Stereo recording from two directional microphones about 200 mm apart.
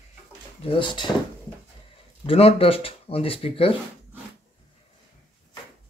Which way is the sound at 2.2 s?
30° left (ahead or behind).